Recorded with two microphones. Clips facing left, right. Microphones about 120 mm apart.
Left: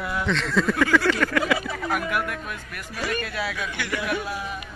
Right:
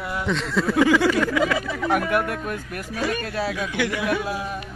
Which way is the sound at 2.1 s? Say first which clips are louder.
Right 5 dB; 40° right (ahead or behind).